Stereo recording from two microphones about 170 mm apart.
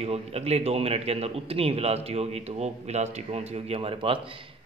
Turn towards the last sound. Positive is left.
turn(degrees=-30)  # may be behind; listen again after turning